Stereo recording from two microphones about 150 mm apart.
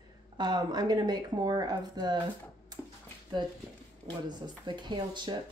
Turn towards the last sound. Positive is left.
turn(degrees=-30)  # may be behind; listen again after turning